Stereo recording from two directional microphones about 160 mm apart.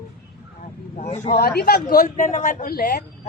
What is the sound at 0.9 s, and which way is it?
Speech, 45° left (ahead or behind).